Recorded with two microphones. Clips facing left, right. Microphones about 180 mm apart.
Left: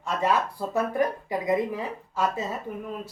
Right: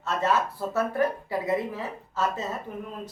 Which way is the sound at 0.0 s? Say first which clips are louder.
Even; 15° left (ahead or behind).